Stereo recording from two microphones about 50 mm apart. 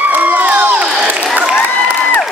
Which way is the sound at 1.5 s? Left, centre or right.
Left.